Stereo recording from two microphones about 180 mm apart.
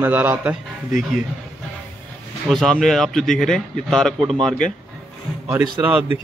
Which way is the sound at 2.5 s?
Centre (ahead or behind).